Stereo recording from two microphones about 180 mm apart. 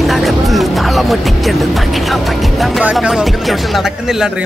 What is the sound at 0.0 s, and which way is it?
Speech, centre (ahead or behind).